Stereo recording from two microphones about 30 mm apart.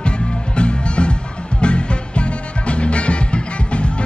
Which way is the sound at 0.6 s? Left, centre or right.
Left.